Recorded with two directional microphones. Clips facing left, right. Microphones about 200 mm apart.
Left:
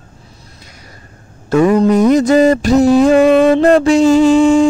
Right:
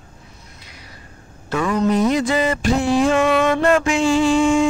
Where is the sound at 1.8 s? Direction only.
45° left (ahead or behind).